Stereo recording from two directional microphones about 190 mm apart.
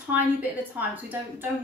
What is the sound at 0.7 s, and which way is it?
Speech, 10° right (ahead or behind).